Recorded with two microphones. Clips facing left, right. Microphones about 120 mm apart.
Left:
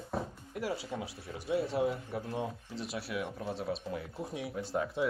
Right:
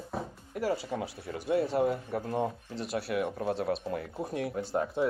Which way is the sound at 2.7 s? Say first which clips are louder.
Right 5 dB; centre (ahead or behind).